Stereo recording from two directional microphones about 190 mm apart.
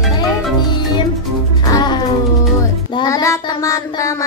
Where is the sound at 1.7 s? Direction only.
25° left (ahead or behind).